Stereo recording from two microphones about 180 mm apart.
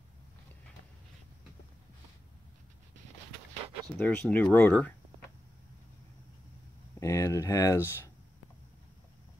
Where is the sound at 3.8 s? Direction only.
10° left (ahead or behind).